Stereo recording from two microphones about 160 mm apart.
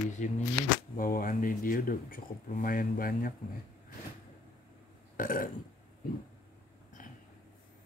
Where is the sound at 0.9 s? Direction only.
60° left (ahead or behind).